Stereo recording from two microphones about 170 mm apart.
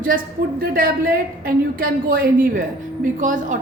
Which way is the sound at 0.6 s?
60° right (ahead or behind).